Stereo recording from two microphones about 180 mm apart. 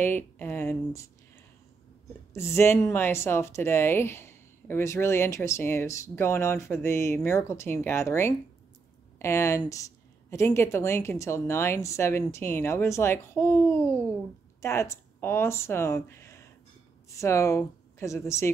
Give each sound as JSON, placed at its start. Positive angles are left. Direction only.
{"t": 0.0, "sound": "speech", "side_deg": 10}
{"t": 2.3, "sound": "speech", "side_deg": 15}